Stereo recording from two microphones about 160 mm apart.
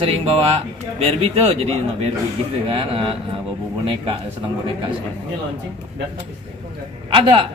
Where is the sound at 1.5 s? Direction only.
40° right (ahead or behind).